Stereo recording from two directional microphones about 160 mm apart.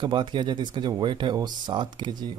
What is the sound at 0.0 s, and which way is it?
Speech, 30° right (ahead or behind).